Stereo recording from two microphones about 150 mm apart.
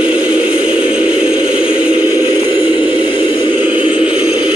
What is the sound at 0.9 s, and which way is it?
Music, 10° right (ahead or behind).